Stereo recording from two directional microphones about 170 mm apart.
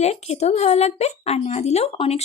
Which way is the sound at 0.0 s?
40° left (ahead or behind).